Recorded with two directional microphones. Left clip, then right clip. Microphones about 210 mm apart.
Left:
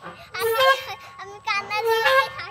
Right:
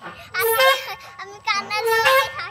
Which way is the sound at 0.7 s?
10° left (ahead or behind).